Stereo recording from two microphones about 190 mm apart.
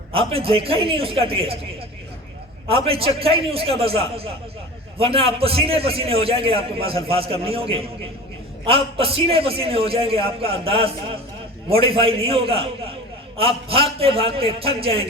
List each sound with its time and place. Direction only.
0.1 s a man's voice: 30° right (ahead or behind)
2.6 s a man's voice: 30° right (ahead or behind)